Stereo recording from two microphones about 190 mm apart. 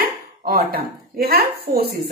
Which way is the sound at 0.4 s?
50° right (ahead or behind).